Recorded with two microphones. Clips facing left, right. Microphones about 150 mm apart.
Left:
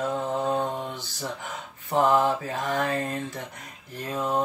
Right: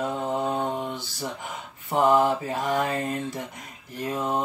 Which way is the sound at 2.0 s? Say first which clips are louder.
Right 1 dB; 20° right (ahead or behind).